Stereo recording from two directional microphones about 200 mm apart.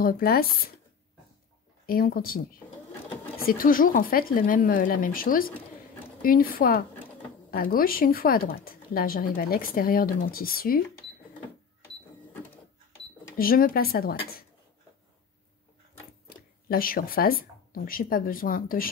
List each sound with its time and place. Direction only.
0.0 s a woman's voice: 45° left (ahead or behind)
1.9 s a woman's voice: 45° left (ahead or behind)
13.4 s a woman's voice: 45° left (ahead or behind)
16.3 s speech: 45° left (ahead or behind)